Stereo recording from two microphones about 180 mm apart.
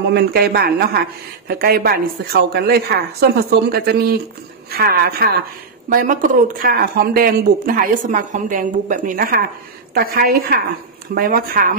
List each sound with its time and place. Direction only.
0.1 s a woman's voice: 60° right (ahead or behind)